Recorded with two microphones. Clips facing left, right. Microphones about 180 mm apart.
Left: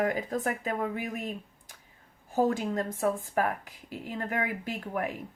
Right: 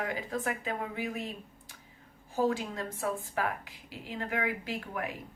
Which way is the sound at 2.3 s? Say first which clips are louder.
Left 3 dB; 45° left (ahead or behind).